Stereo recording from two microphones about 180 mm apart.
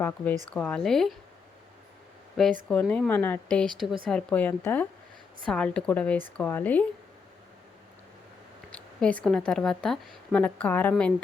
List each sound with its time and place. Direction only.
0.5 s speech: 5° left (ahead or behind)
2.3 s speech: 5° left (ahead or behind)
8.7 s a sound: 5° left (ahead or behind)
9.5 s speech: 5° left (ahead or behind)